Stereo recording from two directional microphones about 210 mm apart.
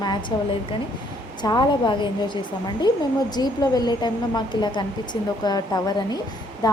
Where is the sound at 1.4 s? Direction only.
20° left (ahead or behind).